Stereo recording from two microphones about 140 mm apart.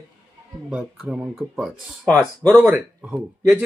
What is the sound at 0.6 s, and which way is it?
Speech, 5° right (ahead or behind).